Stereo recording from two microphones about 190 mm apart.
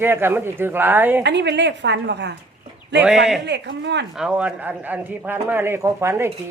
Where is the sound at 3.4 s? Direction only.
65° right (ahead or behind).